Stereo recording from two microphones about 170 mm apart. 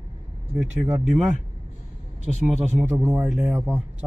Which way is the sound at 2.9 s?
10° right (ahead or behind).